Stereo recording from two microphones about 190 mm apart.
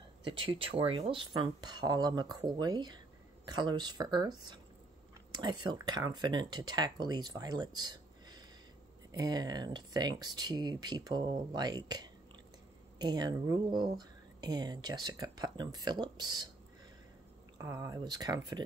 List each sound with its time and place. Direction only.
0.3 s speech: 30° right (ahead or behind)
5.3 s speech: 25° right (ahead or behind)
17.6 s speech: 15° right (ahead or behind)